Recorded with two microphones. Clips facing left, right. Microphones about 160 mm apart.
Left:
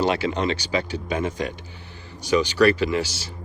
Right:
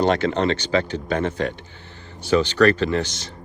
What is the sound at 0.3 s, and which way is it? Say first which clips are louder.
Speech: right 4 dB; 10° left (ahead or behind).